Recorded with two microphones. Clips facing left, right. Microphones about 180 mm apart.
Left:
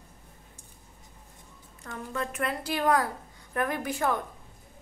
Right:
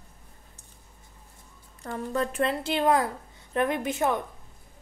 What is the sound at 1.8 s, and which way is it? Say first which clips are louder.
A woman's voice: right 6 dB; 35° right (ahead or behind).